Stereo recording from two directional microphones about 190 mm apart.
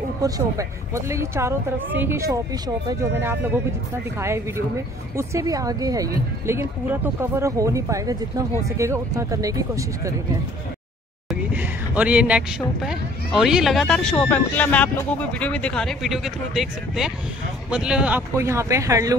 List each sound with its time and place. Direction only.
0.2 s speech: 15° right (ahead or behind)
11.2 s speech: 10° right (ahead or behind)